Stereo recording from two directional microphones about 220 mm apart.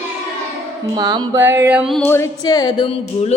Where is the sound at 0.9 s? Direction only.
20° right (ahead or behind).